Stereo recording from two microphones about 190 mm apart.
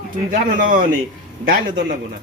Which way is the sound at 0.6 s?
45° right (ahead or behind).